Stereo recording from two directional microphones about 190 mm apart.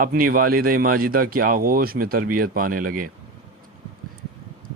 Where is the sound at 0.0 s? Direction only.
50° right (ahead or behind).